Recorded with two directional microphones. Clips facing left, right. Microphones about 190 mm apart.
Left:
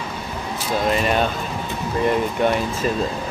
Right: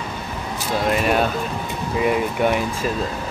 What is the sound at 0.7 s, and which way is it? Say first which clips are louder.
Speech: right 1 dB; 5° right (ahead or behind).